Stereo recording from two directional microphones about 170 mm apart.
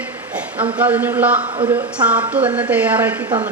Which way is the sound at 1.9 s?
5° right (ahead or behind).